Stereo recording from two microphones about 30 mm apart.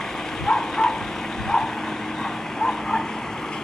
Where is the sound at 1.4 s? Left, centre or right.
Centre.